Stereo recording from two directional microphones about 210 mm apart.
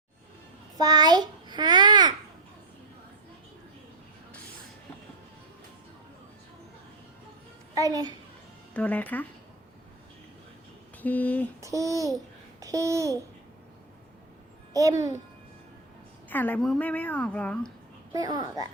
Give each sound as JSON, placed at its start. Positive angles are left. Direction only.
{"t": 0.8, "sound": "babbling", "side_deg": -20}
{"t": 7.8, "sound": "a child's voice", "side_deg": -15}
{"t": 8.7, "sound": "a woman's voice", "side_deg": 5}
{"t": 11.0, "sound": "a woman's voice", "side_deg": 10}
{"t": 11.6, "sound": "a child's voice", "side_deg": -15}
{"t": 14.7, "sound": "a child's voice", "side_deg": -15}
{"t": 16.3, "sound": "a woman's voice", "side_deg": 10}
{"t": 18.1, "sound": "a child's voice", "side_deg": -20}